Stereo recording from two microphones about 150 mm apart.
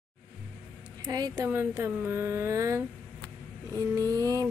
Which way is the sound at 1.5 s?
15° right (ahead or behind).